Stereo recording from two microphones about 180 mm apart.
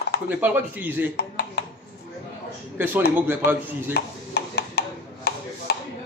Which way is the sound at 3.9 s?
65° left (ahead or behind).